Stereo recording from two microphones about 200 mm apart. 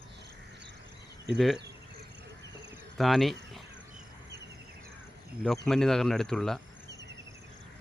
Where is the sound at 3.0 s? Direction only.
Centre (ahead or behind).